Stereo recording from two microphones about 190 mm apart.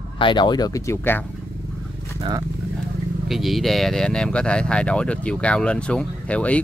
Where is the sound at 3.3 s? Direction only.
Centre (ahead or behind).